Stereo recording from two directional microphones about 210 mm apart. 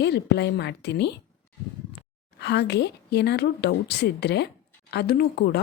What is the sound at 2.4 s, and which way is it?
A woman's voice, 55° left (ahead or behind).